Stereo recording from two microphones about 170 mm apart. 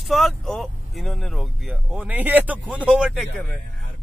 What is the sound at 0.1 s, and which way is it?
Speech, centre (ahead or behind).